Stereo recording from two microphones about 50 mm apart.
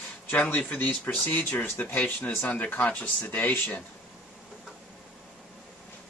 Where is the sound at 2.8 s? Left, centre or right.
Left.